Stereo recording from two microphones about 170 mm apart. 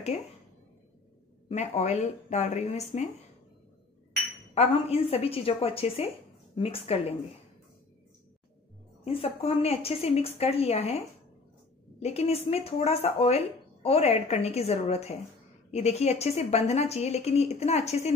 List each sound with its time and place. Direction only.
1.5 s a woman's voice: 40° left (ahead or behind)
4.6 s a woman's voice: 35° left (ahead or behind)
9.0 s a woman's voice: 35° left (ahead or behind)
12.0 s a woman's voice: 40° left (ahead or behind)